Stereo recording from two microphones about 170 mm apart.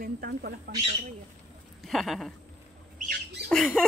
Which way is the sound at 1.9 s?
Centre (ahead or behind).